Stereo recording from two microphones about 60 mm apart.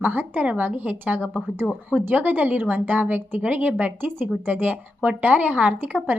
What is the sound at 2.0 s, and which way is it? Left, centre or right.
A woman's voice, right.